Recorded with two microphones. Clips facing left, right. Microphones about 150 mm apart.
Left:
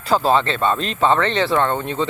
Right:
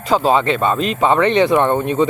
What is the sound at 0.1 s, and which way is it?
Speech, 10° right (ahead or behind).